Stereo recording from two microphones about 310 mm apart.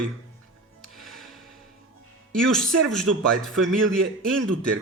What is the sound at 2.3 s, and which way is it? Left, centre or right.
Speech, centre.